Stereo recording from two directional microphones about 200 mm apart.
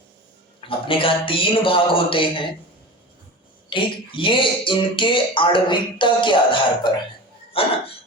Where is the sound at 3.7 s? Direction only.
25° left (ahead or behind).